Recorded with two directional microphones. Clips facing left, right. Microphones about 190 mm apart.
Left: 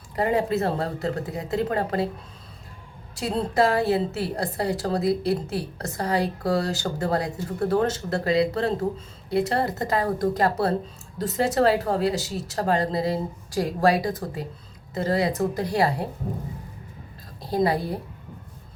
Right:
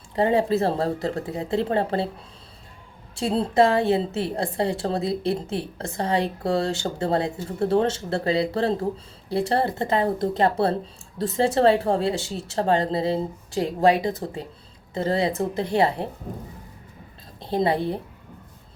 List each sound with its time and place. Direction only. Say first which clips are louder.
0.2 s speech: right 3 dB; 30° right (ahead or behind)
3.2 s a woman's voice: right 3 dB; 30° right (ahead or behind)
17.4 s a woman's voice: right 1 dB; 25° right (ahead or behind)